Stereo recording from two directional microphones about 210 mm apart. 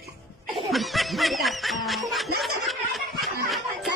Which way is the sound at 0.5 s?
Centre (ahead or behind).